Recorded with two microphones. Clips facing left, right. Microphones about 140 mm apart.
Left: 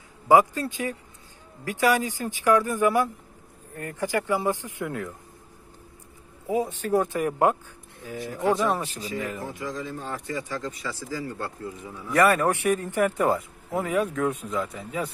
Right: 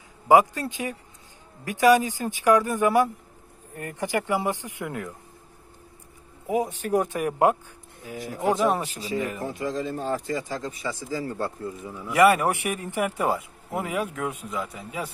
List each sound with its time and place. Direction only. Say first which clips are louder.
0.3 s speech: even; 15° right (ahead or behind)
6.4 s speech: even; 15° right (ahead or behind)
9.4 s speech: right 4 dB; 55° right (ahead or behind)
9.9 s speech: right 5 dB; 35° right (ahead or behind)
10.6 s speech: right 1 dB; 20° right (ahead or behind)
11.9 s speech: right 2 dB; 10° right (ahead or behind)